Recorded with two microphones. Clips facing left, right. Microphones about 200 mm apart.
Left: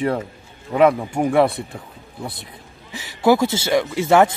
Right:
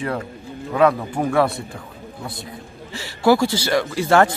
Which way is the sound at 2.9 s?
20° left (ahead or behind).